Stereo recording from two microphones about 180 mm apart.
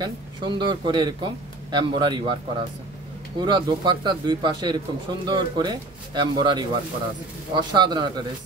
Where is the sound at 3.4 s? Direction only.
25° right (ahead or behind).